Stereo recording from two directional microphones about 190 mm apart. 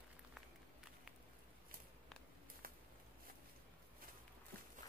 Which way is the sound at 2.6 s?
50° right (ahead or behind).